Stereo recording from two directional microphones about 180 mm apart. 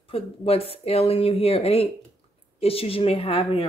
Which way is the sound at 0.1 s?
35° left (ahead or behind).